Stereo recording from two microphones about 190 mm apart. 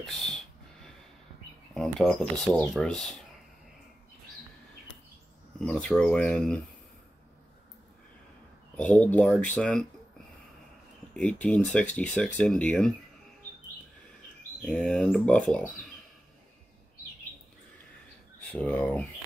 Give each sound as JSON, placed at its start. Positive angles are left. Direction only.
{"t": 0.0, "sound": "speech", "side_deg": 0}
{"t": 1.7, "sound": "speech", "side_deg": 0}
{"t": 5.7, "sound": "speech", "side_deg": 5}
{"t": 8.7, "sound": "speech", "side_deg": 10}
{"t": 11.1, "sound": "speech", "side_deg": 5}
{"t": 14.7, "sound": "speech", "side_deg": 5}
{"t": 18.5, "sound": "speech", "side_deg": 5}